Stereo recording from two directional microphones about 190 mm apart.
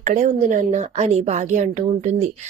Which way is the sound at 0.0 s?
45° right (ahead or behind).